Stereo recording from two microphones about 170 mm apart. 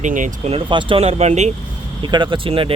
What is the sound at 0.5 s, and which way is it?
Speech, 30° right (ahead or behind).